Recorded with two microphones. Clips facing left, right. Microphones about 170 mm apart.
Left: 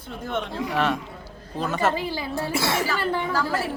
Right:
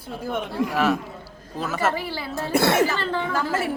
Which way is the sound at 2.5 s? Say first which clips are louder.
Right 8 dB; 55° right (ahead or behind).